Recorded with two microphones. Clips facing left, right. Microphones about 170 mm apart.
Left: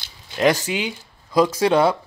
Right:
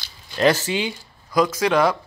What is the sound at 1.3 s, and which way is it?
Speech, 30° left (ahead or behind).